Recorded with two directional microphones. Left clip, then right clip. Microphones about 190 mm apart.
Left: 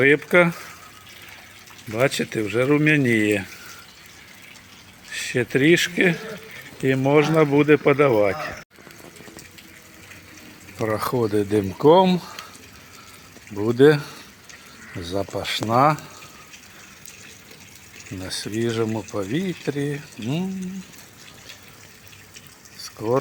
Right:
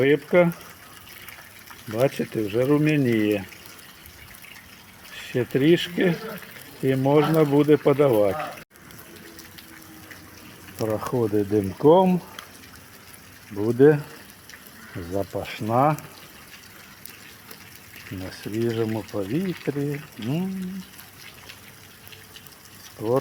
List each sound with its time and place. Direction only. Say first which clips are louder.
0.0 s speech: left 3 dB; 5° left (ahead or behind)
1.9 s speech: left 2 dB; centre (ahead or behind)
5.1 s speech: left 3 dB; centre (ahead or behind)
10.8 s speech: left 2 dB; 10° left (ahead or behind)
11.3 s speech: left 2 dB; centre (ahead or behind)
13.6 s speech: left 2 dB; 5° left (ahead or behind)
15.1 s speech: left 3 dB; 5° left (ahead or behind)
18.3 s speech: left 2 dB; centre (ahead or behind)